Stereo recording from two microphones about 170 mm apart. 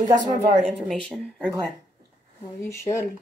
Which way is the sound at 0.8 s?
Centre (ahead or behind).